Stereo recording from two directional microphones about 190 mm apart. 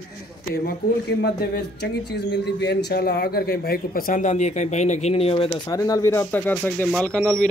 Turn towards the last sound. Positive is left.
turn(degrees=5)  # may be behind; listen again after turning